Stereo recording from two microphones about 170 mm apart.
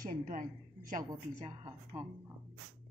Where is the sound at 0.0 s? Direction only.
55° right (ahead or behind).